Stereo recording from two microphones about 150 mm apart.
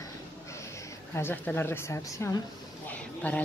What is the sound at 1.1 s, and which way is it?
A woman's voice, 15° left (ahead or behind).